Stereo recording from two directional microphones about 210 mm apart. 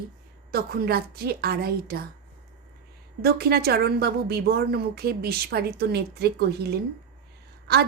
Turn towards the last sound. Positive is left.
turn(degrees=-50)  # may be behind; listen again after turning